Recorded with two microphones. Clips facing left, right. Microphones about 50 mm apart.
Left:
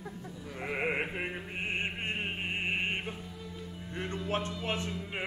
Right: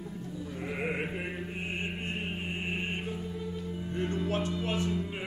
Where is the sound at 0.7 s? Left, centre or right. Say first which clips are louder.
Left 2 dB; left.